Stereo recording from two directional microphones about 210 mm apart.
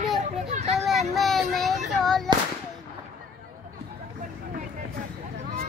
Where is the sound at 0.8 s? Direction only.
Centre (ahead or behind).